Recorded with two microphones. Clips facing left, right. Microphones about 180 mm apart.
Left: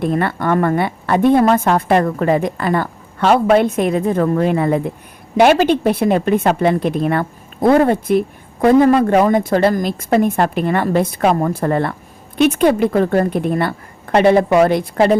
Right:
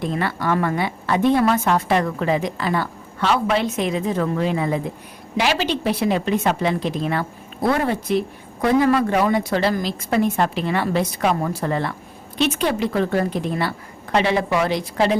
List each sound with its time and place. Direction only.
0.0 s a woman's voice: 55° left (ahead or behind)